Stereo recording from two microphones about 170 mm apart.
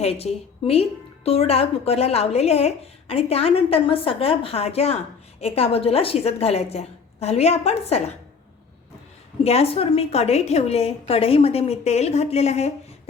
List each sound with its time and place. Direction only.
0.0 s speech: 35° left (ahead or behind)
9.4 s speech: 35° left (ahead or behind)